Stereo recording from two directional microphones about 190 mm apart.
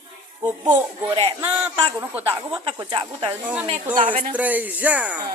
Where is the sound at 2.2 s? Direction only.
10° right (ahead or behind).